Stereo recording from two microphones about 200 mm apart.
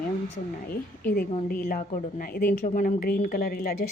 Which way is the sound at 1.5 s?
45° left (ahead or behind).